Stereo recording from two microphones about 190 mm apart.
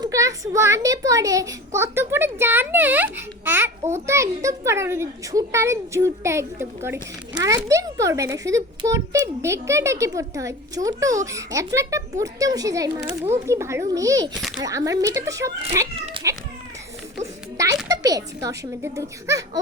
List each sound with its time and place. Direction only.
0.0 s a woman's voice: 15° right (ahead or behind)
17.6 s a woman's voice: 15° right (ahead or behind)